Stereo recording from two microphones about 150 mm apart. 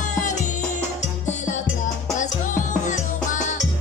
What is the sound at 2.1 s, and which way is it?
Music, 55° left (ahead or behind).